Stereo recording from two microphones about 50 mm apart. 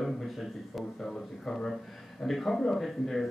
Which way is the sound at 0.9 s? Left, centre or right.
Centre.